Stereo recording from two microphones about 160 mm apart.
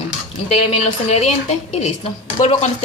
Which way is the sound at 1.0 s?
40° left (ahead or behind).